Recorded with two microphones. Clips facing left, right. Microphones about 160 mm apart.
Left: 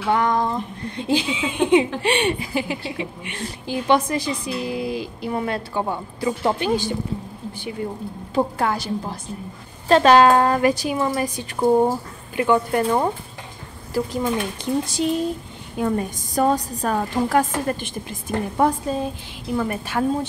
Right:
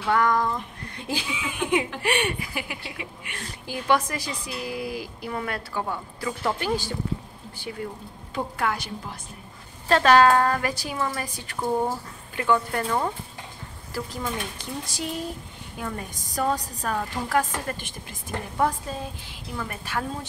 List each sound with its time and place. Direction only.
0.0 s speech: 20° left (ahead or behind)
8.4 s a woman's voice: 30° left (ahead or behind)
9.8 s speech: 20° left (ahead or behind)